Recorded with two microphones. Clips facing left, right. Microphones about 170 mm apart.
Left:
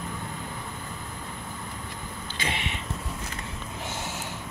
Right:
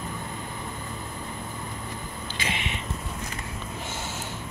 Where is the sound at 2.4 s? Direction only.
40° left (ahead or behind).